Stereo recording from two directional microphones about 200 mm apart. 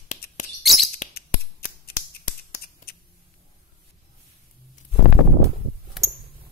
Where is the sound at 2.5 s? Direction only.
50° left (ahead or behind).